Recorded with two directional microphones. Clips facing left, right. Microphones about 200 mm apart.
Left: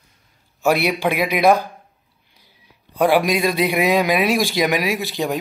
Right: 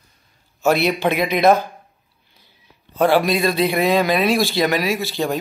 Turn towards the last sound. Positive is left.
turn(degrees=15)  # may be behind; listen again after turning